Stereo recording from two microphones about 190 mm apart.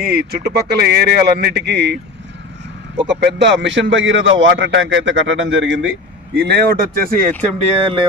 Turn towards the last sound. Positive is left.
turn(degrees=-30)  # may be behind; listen again after turning